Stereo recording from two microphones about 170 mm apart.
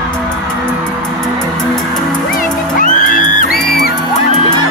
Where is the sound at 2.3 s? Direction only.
50° left (ahead or behind).